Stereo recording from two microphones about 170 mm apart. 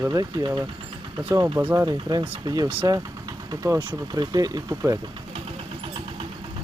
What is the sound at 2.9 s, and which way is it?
Vehicle, 20° right (ahead or behind).